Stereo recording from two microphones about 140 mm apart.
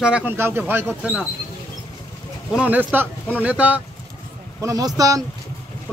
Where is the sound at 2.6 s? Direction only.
10° right (ahead or behind).